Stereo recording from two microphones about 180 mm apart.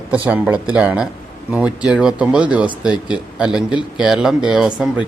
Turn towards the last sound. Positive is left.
turn(degrees=-5)  # may be behind; listen again after turning